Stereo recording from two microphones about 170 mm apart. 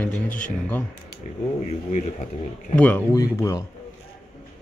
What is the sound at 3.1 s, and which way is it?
Speech, 20° left (ahead or behind).